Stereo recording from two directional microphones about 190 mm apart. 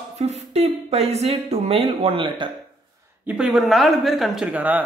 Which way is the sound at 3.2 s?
5° right (ahead or behind).